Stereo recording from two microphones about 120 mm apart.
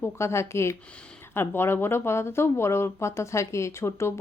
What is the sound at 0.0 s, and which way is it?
Speech, 25° left (ahead or behind).